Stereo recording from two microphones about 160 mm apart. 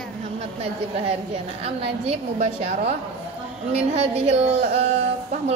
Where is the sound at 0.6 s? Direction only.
40° right (ahead or behind).